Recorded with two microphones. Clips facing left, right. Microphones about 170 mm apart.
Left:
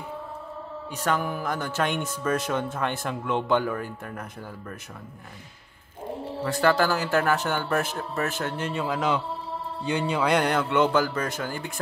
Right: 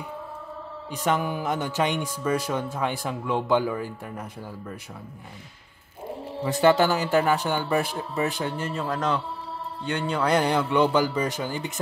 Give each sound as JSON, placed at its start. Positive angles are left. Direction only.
{"t": 1.1, "sound": "speech", "side_deg": 0}
{"t": 1.5, "sound": "speech", "side_deg": -15}
{"t": 6.4, "sound": "speech", "side_deg": -20}
{"t": 8.8, "sound": "speech", "side_deg": 5}